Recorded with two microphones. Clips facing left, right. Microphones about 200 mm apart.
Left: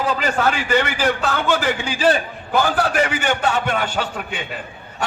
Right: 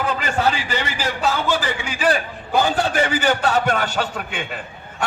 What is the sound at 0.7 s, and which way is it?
A man's voice, 55° left (ahead or behind).